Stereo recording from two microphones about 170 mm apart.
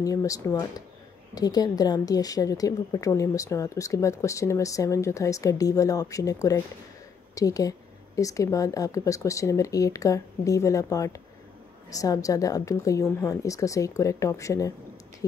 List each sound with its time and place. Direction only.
0.0 s a woman's voice: 20° left (ahead or behind)